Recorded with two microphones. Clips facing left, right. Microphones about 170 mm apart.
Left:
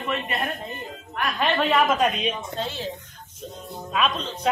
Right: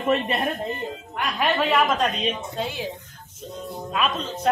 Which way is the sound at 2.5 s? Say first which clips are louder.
Right 1 dB; 10° right (ahead or behind).